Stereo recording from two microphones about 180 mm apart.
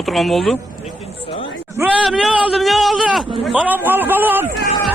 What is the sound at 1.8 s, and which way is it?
A man's voice, 5° right (ahead or behind).